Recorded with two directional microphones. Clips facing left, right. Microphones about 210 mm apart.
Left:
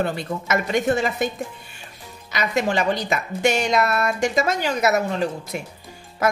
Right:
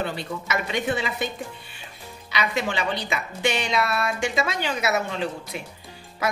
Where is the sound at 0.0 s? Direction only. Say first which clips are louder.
Left 4 dB; 50° left (ahead or behind).